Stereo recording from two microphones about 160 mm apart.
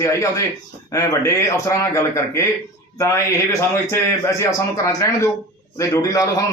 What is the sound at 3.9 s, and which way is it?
A man's voice, 20° left (ahead or behind).